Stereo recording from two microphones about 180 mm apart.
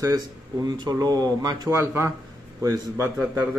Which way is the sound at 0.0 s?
20° right (ahead or behind).